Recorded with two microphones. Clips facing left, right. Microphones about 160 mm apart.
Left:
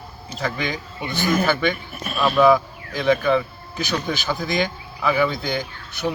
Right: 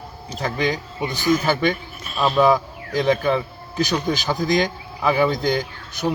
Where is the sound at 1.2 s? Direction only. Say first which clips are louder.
Right 1 dB; 60° left (ahead or behind).